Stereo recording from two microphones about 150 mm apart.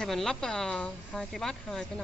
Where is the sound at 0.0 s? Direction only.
5° left (ahead or behind).